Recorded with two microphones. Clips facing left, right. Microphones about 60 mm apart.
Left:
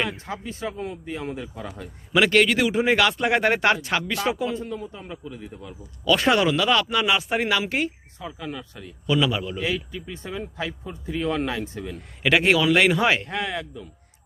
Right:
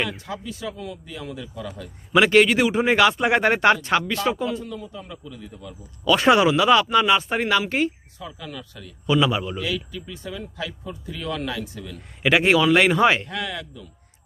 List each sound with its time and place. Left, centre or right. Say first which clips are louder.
0.2 s a man's voice: left 1 dB; left
2.1 s speech: right 3 dB; centre
4.4 s a man's voice: even; left
6.1 s speech: right 3 dB; centre
8.2 s speech: left 2 dB; left
9.0 s a man's voice: right 2 dB; centre
9.6 s speech: left 1 dB; left
12.2 s speech: right 2 dB; centre
13.2 s speech: left 2 dB; left